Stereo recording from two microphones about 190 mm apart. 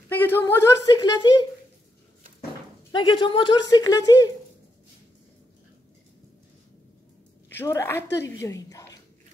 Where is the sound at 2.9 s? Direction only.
25° left (ahead or behind).